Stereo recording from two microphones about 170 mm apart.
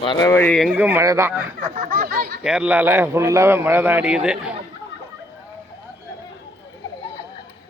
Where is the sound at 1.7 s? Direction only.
60° right (ahead or behind).